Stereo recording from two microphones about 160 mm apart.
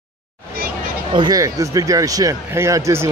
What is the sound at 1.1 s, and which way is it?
Speech, 25° right (ahead or behind).